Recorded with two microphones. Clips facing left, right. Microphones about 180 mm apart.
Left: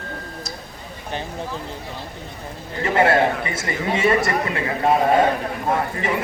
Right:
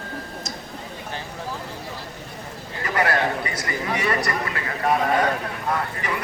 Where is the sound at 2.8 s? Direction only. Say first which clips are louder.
Left 5 dB; 25° left (ahead or behind).